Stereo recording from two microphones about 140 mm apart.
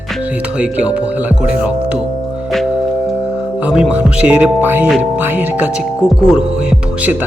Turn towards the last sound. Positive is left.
turn(degrees=-10)  # may be behind; listen again after turning